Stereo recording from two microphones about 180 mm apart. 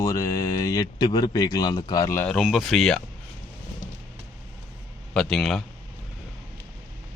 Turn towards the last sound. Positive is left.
turn(degrees=0)  # may be behind; listen again after turning